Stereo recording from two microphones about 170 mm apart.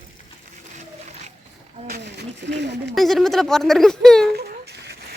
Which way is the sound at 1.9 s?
75° right (ahead or behind).